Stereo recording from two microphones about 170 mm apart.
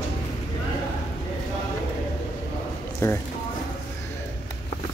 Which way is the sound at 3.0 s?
15° left (ahead or behind).